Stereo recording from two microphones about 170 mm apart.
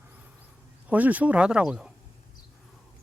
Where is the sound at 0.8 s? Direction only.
10° right (ahead or behind).